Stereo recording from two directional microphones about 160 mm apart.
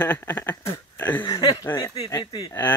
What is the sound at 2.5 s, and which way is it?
Speech, 10° left (ahead or behind).